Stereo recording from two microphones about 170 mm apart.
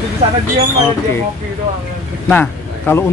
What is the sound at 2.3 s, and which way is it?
Speech, 10° left (ahead or behind).